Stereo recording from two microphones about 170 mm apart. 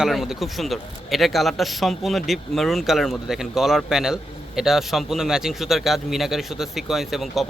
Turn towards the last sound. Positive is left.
turn(degrees=0)  # may be behind; listen again after turning